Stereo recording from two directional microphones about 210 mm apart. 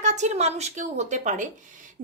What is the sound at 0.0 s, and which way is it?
Speech, 35° right (ahead or behind).